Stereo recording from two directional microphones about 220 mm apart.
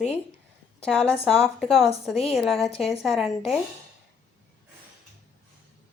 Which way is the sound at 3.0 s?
Centre (ahead or behind).